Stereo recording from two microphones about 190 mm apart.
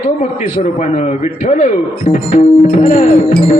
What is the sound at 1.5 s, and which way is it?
Speech, 40° left (ahead or behind).